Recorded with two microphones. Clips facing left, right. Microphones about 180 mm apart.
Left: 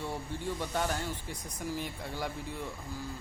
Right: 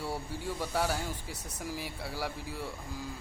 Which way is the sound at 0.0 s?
10° right (ahead or behind).